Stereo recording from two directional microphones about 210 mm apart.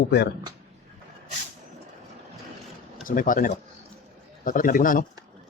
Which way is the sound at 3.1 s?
40° left (ahead or behind).